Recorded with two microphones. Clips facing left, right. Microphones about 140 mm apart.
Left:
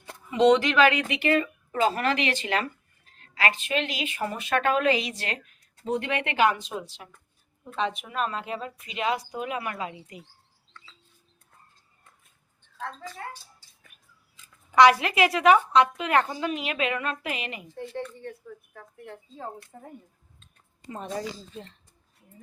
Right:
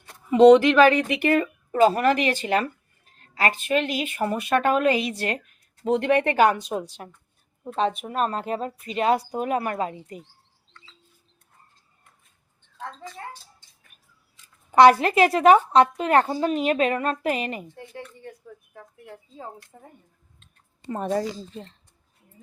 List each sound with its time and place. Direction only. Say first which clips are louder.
0.3 s a woman's voice: right 7 dB; 45° right (ahead or behind)
3.7 s speech: right 5 dB; 45° right (ahead or behind)
5.8 s speech: right 6 dB; 75° right (ahead or behind)
6.1 s a woman's voice: right 5 dB; 45° right (ahead or behind)
14.7 s a sound: right 3 dB; 45° right (ahead or behind)
14.9 s a woman's voice: right 5 dB; 40° right (ahead or behind)
17.9 s speech: left 4 dB; 10° right (ahead or behind)
20.9 s speech: right 8 dB; 50° right (ahead or behind)